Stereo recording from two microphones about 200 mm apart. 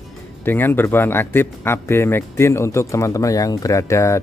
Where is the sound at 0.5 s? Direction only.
10° left (ahead or behind).